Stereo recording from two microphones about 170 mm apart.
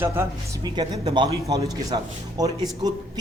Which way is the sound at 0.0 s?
20° right (ahead or behind).